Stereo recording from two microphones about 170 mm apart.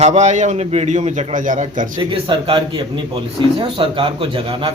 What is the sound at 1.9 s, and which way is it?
A man's voice, 30° right (ahead or behind).